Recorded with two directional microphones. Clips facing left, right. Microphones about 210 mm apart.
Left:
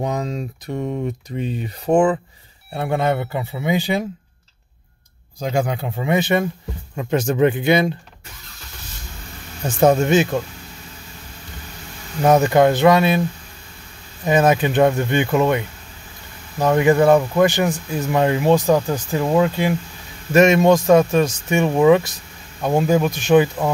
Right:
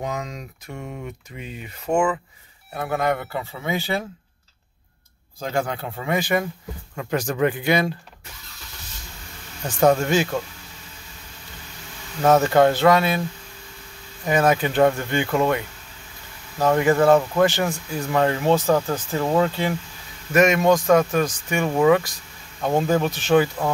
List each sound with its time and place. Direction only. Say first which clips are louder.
0.0 s speech: left 6 dB; 35° left (ahead or behind); by 4.0 s 15° left (ahead or behind)
5.4 s speech: left 4 dB; 15° left (ahead or behind)
9.7 s speech: left 3 dB; 25° left (ahead or behind)
12.2 s speech: left 2 dB; 15° left (ahead or behind)
14.2 s speech: left 3 dB; 20° left (ahead or behind)
20.3 s speech: left 4 dB; 25° left (ahead or behind)
22.6 s speech: left 3 dB; 10° left (ahead or behind)